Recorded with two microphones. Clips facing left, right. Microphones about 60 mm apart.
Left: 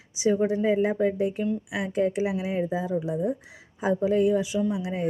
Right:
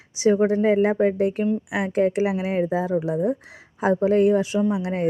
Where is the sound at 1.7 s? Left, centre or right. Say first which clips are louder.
Right 4 dB; right.